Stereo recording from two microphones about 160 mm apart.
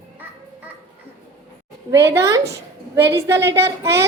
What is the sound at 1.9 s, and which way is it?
A woman's voice, 15° right (ahead or behind).